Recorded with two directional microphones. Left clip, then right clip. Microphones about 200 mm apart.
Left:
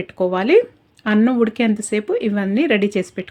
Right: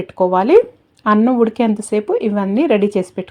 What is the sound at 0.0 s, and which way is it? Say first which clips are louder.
Speech: right 5 dB; 5° right (ahead or behind).